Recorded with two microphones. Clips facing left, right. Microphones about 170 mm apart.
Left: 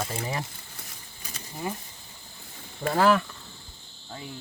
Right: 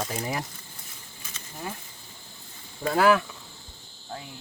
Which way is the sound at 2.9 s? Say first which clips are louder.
Right 1 dB; 5° right (ahead or behind).